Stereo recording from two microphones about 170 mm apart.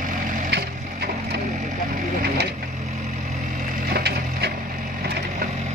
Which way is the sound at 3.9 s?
75° right (ahead or behind).